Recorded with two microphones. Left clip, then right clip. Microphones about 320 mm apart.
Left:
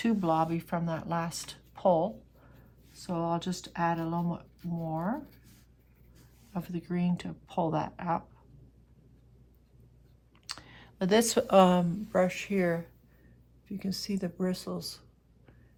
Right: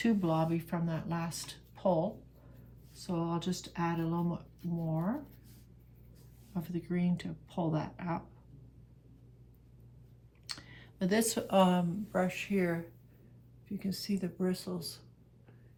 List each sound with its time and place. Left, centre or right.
0.0 s speech: centre
3.1 s speech: centre
6.5 s speech: centre
10.4 s speech: centre
13.7 s speech: centre